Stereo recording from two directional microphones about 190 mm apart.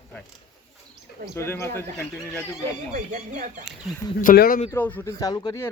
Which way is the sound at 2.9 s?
40° right (ahead or behind).